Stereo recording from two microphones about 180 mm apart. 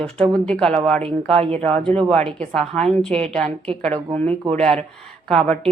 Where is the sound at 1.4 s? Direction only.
35° right (ahead or behind).